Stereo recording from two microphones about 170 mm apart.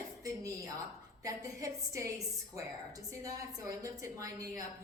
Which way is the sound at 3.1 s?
20° right (ahead or behind).